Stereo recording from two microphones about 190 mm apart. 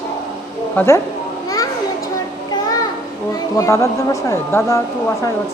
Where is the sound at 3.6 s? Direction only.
15° left (ahead or behind).